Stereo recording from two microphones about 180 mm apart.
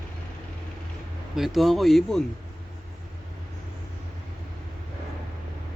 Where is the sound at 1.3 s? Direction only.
Centre (ahead or behind).